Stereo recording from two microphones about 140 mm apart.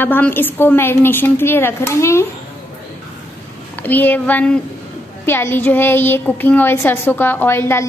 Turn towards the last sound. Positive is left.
turn(degrees=15)  # may be behind; listen again after turning